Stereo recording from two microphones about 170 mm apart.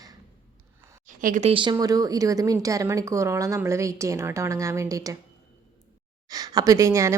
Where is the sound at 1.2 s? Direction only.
50° right (ahead or behind).